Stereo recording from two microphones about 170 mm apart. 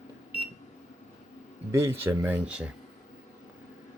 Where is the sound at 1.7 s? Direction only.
15° right (ahead or behind).